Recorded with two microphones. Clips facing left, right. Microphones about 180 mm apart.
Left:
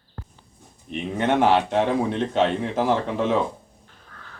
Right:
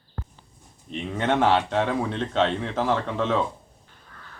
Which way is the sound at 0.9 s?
65° left (ahead or behind).